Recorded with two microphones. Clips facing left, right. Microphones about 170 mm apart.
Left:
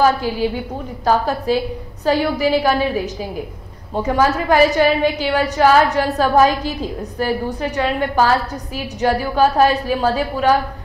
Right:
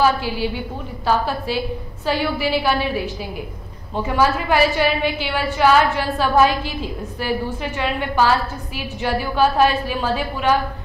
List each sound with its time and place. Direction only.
0.0 s a woman's voice: 40° left (ahead or behind)